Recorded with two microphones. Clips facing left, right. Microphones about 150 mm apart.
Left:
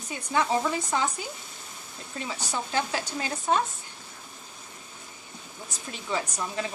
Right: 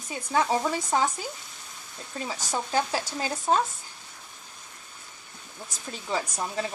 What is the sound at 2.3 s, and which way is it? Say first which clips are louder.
Speech: right 2 dB; 40° right (ahead or behind).